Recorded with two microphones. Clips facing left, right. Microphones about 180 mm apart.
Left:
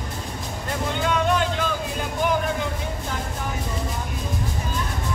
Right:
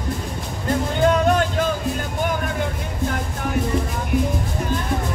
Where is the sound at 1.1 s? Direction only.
45° right (ahead or behind).